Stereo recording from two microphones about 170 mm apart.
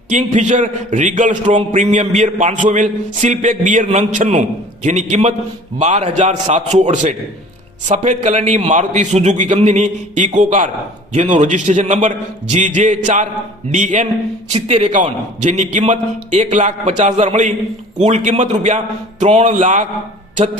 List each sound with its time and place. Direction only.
0.1 s a man's voice: 45° right (ahead or behind)